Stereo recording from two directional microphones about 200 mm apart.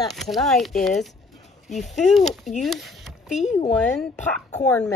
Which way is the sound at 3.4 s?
35° left (ahead or behind).